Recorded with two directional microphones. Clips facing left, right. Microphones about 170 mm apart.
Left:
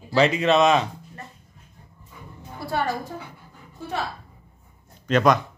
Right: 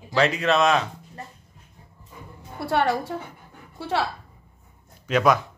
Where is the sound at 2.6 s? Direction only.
70° right (ahead or behind).